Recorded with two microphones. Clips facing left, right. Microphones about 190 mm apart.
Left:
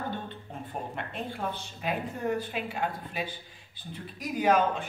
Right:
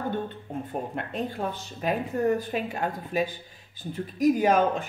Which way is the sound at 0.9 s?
40° right (ahead or behind).